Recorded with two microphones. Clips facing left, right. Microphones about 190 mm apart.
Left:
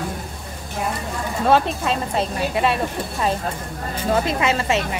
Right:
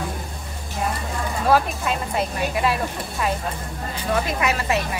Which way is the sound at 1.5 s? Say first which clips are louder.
Left 2 dB; 25° left (ahead or behind).